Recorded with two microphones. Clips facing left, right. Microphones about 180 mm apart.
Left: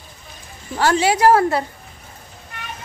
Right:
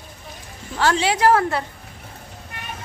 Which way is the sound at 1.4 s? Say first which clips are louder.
Left 4 dB; 35° left (ahead or behind).